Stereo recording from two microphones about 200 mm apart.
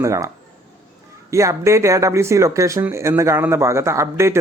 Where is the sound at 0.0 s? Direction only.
15° right (ahead or behind).